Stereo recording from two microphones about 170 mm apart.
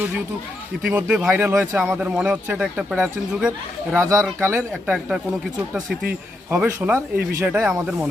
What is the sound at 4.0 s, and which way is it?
Speech, 20° right (ahead or behind).